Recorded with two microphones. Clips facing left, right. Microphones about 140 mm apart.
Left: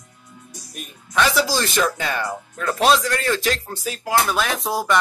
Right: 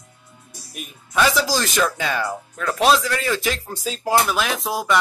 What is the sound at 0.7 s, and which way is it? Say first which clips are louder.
Speech: right 2 dB; 5° right (ahead or behind).